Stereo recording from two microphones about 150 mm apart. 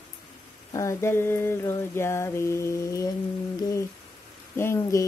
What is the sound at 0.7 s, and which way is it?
Mantra, 20° left (ahead or behind).